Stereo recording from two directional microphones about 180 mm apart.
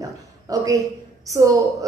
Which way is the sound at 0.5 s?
20° right (ahead or behind).